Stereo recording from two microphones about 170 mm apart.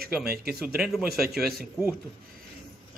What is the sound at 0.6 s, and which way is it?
Speech, 5° right (ahead or behind).